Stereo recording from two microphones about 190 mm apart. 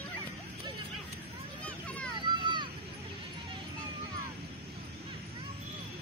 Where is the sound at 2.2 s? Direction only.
25° right (ahead or behind).